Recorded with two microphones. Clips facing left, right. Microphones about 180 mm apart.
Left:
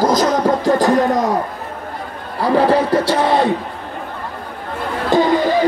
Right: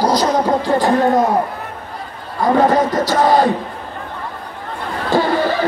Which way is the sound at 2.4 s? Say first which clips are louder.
Even; 30° left (ahead or behind).